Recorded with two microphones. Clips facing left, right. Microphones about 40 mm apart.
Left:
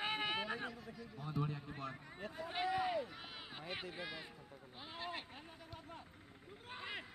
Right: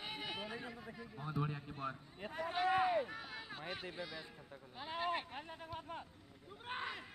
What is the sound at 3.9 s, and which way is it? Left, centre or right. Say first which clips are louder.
Speech: even; left.